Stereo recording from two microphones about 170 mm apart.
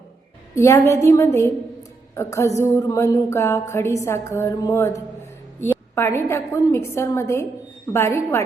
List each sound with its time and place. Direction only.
0.5 s a woman's voice: 15° left (ahead or behind)